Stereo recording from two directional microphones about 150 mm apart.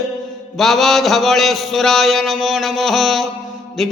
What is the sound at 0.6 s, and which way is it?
A man's voice, centre (ahead or behind).